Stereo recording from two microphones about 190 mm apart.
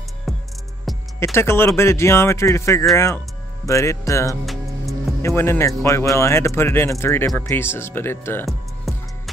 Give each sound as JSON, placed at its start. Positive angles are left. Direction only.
{"t": 0.9, "sound": "music", "side_deg": 0}
{"t": 1.2, "sound": "speech", "side_deg": 15}
{"t": 8.5, "sound": "music", "side_deg": 0}